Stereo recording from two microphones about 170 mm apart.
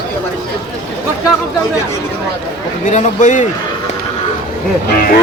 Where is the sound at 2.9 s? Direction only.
45° left (ahead or behind).